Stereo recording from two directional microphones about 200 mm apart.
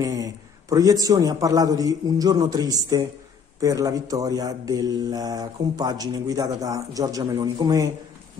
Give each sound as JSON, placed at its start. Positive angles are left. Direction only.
{"t": 0.0, "sound": "speech", "side_deg": -20}